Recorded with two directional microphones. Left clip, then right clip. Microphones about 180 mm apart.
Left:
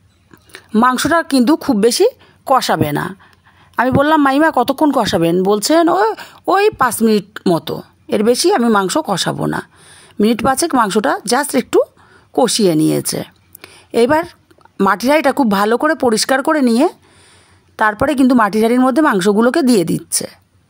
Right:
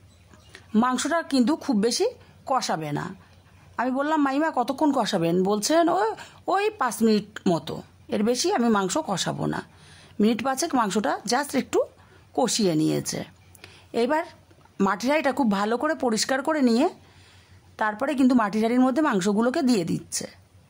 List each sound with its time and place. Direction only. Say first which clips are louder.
0.5 s speech: left 11 dB; 35° left (ahead or behind)